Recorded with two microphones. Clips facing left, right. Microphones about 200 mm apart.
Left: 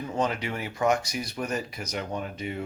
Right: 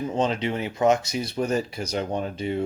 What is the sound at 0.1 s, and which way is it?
Speech, 25° right (ahead or behind).